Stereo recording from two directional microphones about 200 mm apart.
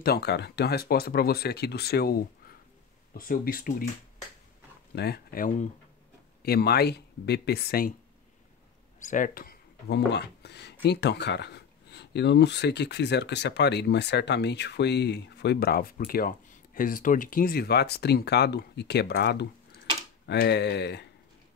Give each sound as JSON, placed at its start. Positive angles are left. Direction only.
{"t": 0.0, "sound": "speech", "side_deg": 55}
{"t": 4.9, "sound": "speech", "side_deg": 55}
{"t": 6.4, "sound": "speech", "side_deg": 50}
{"t": 9.0, "sound": "speech", "side_deg": 40}